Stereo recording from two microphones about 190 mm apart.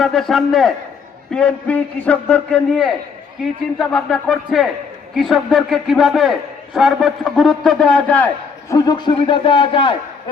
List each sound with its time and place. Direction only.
0.0 s a man's voice: centre (ahead or behind)
8.7 s a man's voice: 20° left (ahead or behind)